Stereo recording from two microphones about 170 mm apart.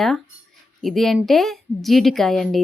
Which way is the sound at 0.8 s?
Centre (ahead or behind).